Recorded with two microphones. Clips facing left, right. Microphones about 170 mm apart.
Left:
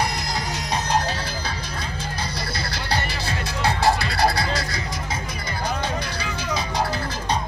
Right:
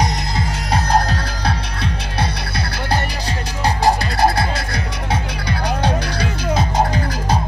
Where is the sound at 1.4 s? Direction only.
65° right (ahead or behind).